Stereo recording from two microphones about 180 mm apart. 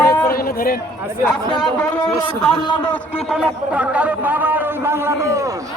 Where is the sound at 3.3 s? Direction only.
5° right (ahead or behind).